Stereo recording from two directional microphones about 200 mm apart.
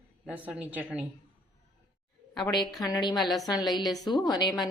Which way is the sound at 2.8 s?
20° left (ahead or behind).